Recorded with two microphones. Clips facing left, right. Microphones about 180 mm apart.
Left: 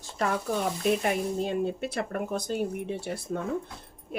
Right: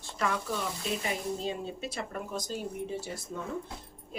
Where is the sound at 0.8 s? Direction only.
60° left (ahead or behind).